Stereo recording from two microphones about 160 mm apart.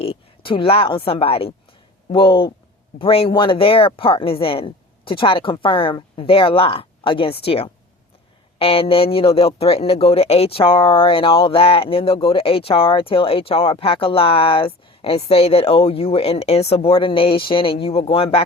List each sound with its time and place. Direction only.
0.0 s speech: 35° left (ahead or behind)